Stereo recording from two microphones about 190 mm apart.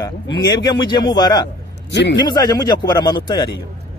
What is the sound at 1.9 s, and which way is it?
Speech, 65° left (ahead or behind).